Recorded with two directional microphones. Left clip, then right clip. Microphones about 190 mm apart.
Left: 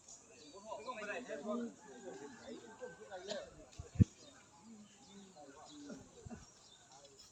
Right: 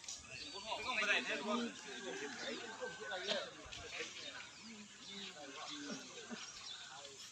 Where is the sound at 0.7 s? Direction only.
35° left (ahead or behind).